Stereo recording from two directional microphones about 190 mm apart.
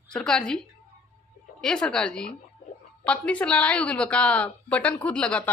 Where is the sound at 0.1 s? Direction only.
5° left (ahead or behind).